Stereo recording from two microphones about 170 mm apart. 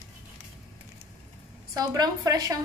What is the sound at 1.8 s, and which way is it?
Speech, 25° right (ahead or behind).